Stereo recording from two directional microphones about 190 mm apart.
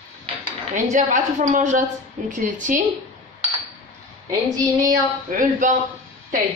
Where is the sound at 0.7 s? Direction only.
40° right (ahead or behind).